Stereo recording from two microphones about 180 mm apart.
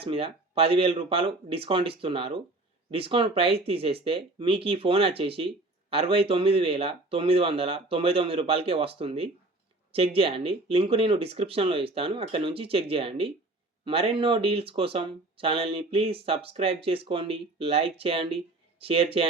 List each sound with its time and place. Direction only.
0.0 s speech: 30° right (ahead or behind)